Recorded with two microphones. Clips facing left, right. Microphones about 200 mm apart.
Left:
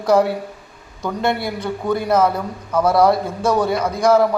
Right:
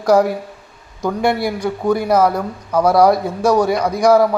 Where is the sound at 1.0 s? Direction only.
10° right (ahead or behind).